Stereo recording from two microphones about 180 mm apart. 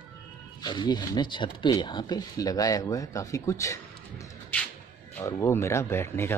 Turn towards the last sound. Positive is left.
turn(degrees=15)  # may be behind; listen again after turning